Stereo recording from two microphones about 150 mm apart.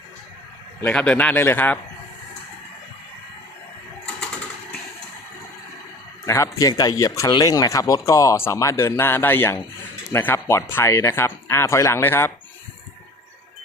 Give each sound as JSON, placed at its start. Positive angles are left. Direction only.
{"t": 0.8, "sound": "speech", "side_deg": 10}
{"t": 6.2, "sound": "speech", "side_deg": 20}